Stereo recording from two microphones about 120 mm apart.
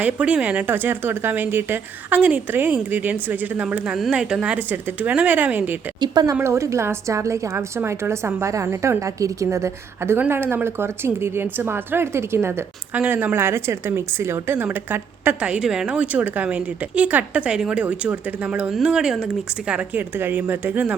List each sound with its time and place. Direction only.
0.0 s speech: 10° right (ahead or behind)
6.0 s speech: 35° right (ahead or behind)
6.4 s a woman's voice: 25° right (ahead or behind)